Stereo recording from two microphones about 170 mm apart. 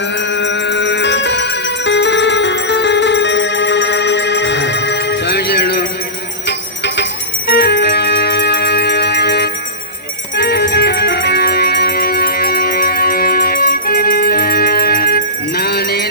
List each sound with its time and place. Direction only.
0.2 s music: 90° left; by 5.8 s 75° left (ahead or behind)
6.8 s music: 90° left; by 16.0 s 70° left (ahead or behind)